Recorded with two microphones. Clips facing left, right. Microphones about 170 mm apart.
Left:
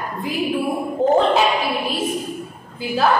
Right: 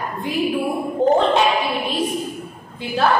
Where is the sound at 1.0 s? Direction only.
Centre (ahead or behind).